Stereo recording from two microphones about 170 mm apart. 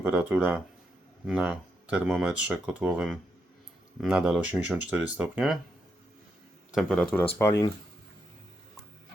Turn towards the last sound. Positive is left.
turn(degrees=15)  # may be behind; listen again after turning